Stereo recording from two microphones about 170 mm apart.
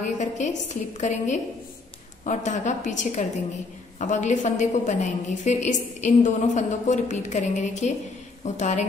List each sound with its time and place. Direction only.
0.2 s a woman's voice: 45° left (ahead or behind)